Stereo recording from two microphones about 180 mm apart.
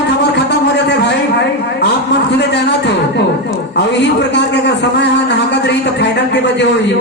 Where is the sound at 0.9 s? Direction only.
70° left (ahead or behind).